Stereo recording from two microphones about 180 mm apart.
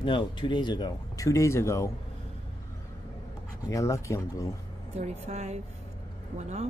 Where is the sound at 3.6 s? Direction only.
15° left (ahead or behind).